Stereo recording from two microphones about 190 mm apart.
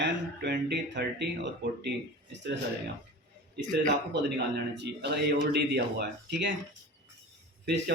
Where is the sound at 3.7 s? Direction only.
60° right (ahead or behind).